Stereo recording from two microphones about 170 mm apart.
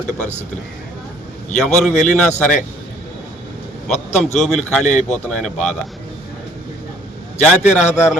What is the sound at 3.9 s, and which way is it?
Speech, 40° left (ahead or behind).